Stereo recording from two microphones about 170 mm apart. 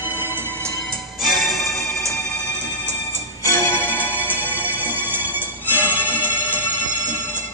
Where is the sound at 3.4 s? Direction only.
10° left (ahead or behind).